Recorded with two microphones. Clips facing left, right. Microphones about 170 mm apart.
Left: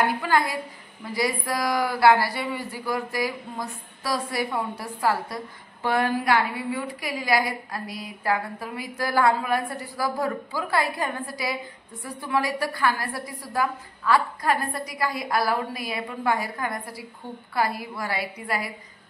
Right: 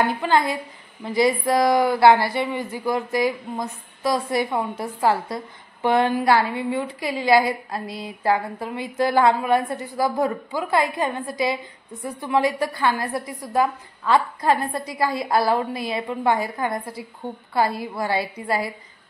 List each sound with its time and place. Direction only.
0.2 s a woman's voice: 25° right (ahead or behind)